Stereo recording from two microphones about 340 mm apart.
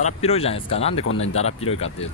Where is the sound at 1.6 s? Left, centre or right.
Centre.